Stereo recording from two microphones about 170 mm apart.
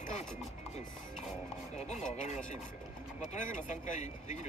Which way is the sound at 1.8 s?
40° left (ahead or behind).